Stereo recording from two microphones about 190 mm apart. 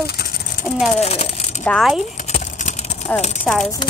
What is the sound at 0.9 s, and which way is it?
Speech, 35° left (ahead or behind).